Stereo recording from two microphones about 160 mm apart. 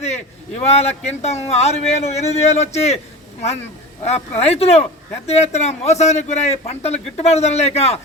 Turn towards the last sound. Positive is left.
turn(degrees=40)  # may be behind; listen again after turning